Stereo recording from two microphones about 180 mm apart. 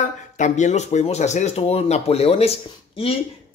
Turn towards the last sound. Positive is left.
turn(degrees=35)  # may be behind; listen again after turning